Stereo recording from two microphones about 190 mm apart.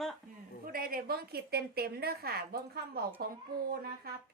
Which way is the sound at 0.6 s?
50° right (ahead or behind).